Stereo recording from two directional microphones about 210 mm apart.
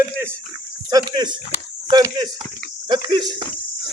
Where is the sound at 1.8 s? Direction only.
20° right (ahead or behind).